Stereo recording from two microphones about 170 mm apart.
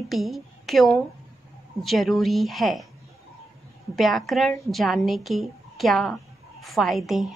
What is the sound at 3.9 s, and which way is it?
A woman's voice, centre (ahead or behind).